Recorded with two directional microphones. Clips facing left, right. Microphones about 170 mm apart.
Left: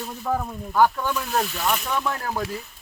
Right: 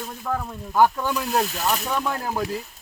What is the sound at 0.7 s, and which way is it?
Speech, 15° right (ahead or behind).